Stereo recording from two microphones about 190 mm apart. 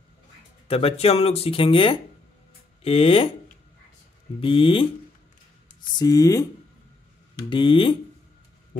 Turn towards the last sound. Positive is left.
turn(degrees=25)  # may be behind; listen again after turning